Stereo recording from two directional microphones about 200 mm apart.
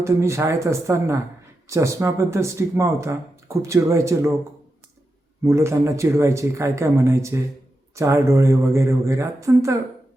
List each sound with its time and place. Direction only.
0.0 s speech: 15° right (ahead or behind)
5.4 s speech: 15° right (ahead or behind)